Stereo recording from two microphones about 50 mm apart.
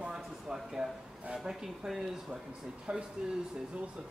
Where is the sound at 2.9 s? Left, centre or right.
Right.